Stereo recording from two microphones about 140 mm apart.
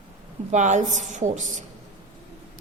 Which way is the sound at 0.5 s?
60° right (ahead or behind).